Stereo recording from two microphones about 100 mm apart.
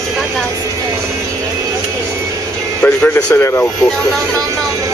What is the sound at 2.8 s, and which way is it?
Speech, 15° left (ahead or behind).